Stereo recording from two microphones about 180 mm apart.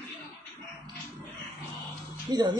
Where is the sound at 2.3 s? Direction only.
25° right (ahead or behind).